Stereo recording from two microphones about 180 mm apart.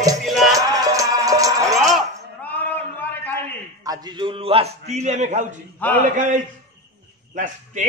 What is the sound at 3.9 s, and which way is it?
A man's voice, 25° right (ahead or behind).